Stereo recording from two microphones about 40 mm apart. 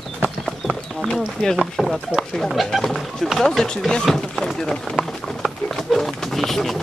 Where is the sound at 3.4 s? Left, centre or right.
Centre.